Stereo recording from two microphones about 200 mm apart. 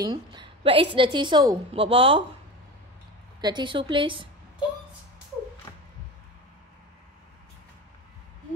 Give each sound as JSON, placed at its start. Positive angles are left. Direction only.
{"t": 0.0, "sound": "a woman's voice", "side_deg": -20}
{"t": 3.3, "sound": "a woman's voice", "side_deg": -20}
{"t": 5.7, "sound": "a sound", "side_deg": 15}